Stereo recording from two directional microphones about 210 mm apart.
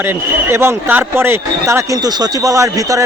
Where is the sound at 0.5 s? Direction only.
10° right (ahead or behind).